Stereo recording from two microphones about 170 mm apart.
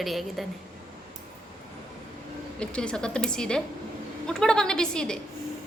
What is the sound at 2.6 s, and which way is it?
A woman's voice, 5° left (ahead or behind).